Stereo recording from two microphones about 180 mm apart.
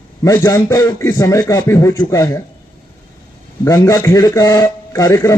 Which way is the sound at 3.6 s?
15° left (ahead or behind).